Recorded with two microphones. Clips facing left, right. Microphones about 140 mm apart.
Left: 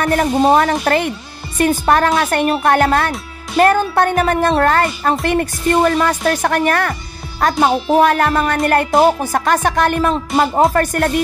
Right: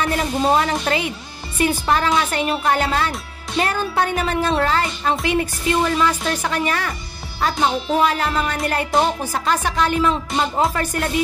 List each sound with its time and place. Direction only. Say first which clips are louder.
0.0 s speech: left 6 dB; 50° left (ahead or behind)